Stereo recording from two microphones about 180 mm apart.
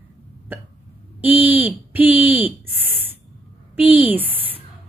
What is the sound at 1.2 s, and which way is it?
Speech, 10° right (ahead or behind).